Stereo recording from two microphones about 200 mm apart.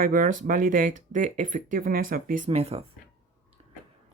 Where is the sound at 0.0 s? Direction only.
40° right (ahead or behind).